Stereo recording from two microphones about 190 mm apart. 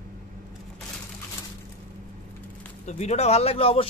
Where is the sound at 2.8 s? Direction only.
35° left (ahead or behind).